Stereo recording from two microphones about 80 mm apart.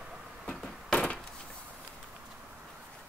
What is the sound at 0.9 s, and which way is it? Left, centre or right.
Wood, centre.